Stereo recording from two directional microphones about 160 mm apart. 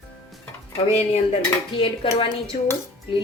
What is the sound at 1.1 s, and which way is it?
A woman's voice, 35° left (ahead or behind).